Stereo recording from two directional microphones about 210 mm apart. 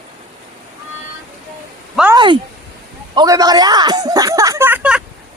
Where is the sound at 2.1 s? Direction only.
20° right (ahead or behind); by 5.0 s 5° right (ahead or behind).